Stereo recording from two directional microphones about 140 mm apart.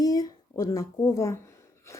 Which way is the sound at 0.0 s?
25° left (ahead or behind).